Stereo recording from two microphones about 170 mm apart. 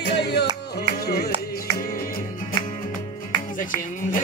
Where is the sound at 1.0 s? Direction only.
65° left (ahead or behind).